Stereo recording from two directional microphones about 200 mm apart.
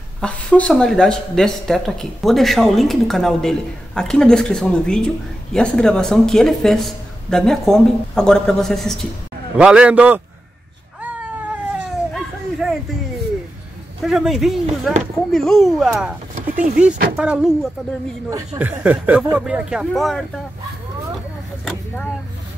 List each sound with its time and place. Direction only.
0.2 s a man's voice: 5° left (ahead or behind)
11.7 s baby cry: centre (ahead or behind)
14.0 s speech: centre (ahead or behind)
16.3 s speech: 40° right (ahead or behind)
17.2 s speech: 5° right (ahead or behind)